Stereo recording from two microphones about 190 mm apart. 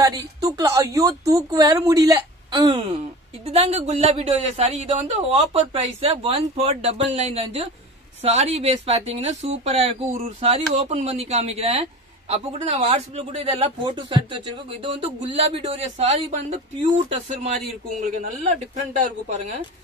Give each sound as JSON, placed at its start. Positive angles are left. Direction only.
{"t": 0.0, "sound": "a woman's voice", "side_deg": -15}
{"t": 3.4, "sound": "a man's voice", "side_deg": -35}